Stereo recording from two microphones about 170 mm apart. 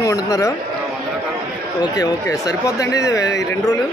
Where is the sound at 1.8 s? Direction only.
20° left (ahead or behind).